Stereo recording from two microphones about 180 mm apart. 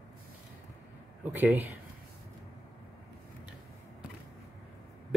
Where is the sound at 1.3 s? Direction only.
10° right (ahead or behind).